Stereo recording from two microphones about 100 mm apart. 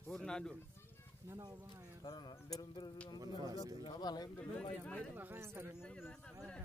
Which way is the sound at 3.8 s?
45° left (ahead or behind).